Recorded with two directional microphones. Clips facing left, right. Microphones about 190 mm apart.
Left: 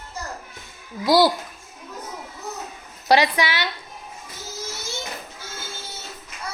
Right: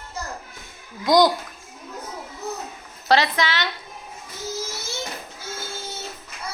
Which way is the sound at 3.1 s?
10° left (ahead or behind).